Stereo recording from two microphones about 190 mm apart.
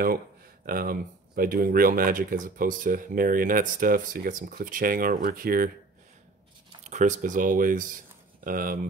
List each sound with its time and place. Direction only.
0.7 s speech: 50° right (ahead or behind)
6.8 s speech: 40° right (ahead or behind)